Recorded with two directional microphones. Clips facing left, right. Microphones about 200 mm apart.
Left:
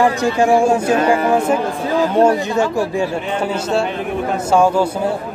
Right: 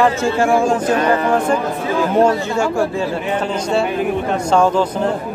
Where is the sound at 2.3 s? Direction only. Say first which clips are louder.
Left 1 dB; 20° left (ahead or behind).